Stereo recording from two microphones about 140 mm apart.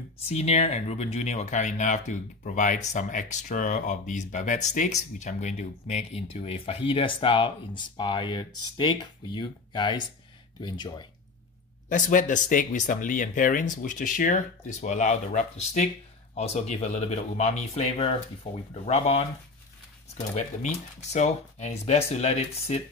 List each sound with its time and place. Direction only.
0.3 s speech: 50° left (ahead or behind); by 11.1 s 35° left (ahead or behind)
11.9 s speech: 65° left (ahead or behind); by 19.2 s 50° left (ahead or behind)
20.3 s speech: 55° left (ahead or behind)